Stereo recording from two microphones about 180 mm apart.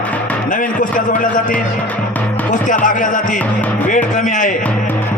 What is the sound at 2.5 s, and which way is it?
Speech, 45° left (ahead or behind).